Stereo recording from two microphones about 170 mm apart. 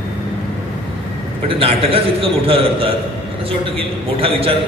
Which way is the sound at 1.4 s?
35° right (ahead or behind).